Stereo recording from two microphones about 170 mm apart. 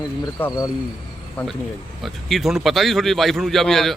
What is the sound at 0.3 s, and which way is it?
A man's voice, 15° left (ahead or behind).